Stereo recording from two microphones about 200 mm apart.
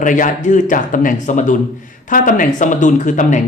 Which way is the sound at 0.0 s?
40° left (ahead or behind).